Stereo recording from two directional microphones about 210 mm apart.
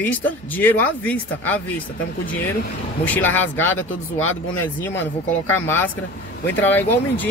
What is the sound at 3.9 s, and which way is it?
Speech, 75° left (ahead or behind).